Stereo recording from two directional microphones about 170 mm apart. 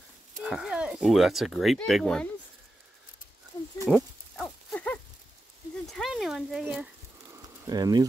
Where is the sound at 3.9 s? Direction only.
Centre (ahead or behind).